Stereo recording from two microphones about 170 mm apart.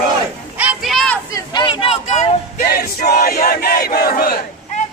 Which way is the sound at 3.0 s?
55° left (ahead or behind).